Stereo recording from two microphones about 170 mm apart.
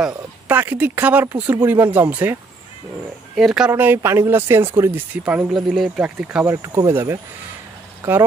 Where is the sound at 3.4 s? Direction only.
5° right (ahead or behind).